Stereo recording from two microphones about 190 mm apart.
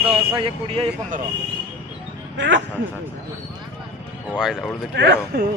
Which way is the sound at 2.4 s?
70° right (ahead or behind).